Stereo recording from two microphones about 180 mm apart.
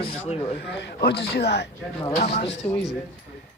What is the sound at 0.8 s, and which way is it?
Speech, 65° left (ahead or behind).